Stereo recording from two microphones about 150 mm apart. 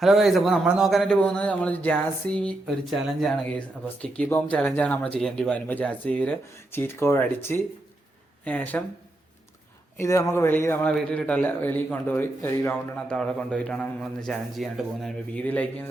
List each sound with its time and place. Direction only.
0.0 s a man's voice: centre (ahead or behind)
10.0 s speech: 20° left (ahead or behind)
10.8 s speech: 5° left (ahead or behind)